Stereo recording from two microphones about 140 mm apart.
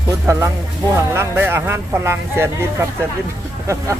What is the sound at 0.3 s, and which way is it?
Speech, 20° right (ahead or behind).